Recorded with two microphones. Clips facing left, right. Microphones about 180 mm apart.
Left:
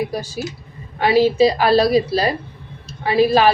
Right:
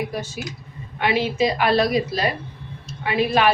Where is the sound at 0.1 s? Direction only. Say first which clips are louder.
Left 4 dB; 35° left (ahead or behind).